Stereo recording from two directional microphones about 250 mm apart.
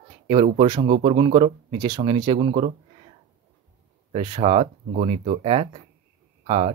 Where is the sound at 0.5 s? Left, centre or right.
Centre.